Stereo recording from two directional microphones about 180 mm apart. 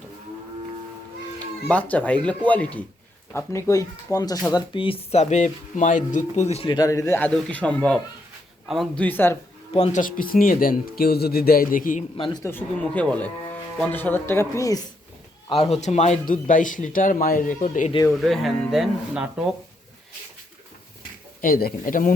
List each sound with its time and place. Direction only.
1.7 s speech: 10° left (ahead or behind)
9.0 s speech: 10° left (ahead or behind)
9.7 s speech: 40° left (ahead or behind)
12.1 s speech: 30° left (ahead or behind)
12.4 s speech: 10° left (ahead or behind)
15.4 s speech: 35° left (ahead or behind)
18.1 s speech: centre (ahead or behind)
21.4 s speech: 50° left (ahead or behind)